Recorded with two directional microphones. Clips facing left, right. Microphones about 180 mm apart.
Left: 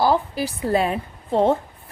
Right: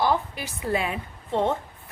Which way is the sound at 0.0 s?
35° left (ahead or behind).